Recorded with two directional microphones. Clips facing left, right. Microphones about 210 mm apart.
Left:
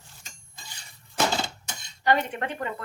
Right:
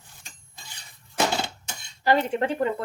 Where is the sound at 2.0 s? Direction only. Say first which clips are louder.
Right 3 dB; 30° right (ahead or behind).